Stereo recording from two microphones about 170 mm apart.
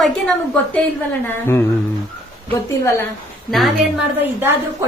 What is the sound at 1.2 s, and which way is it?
Speech, 15° left (ahead or behind).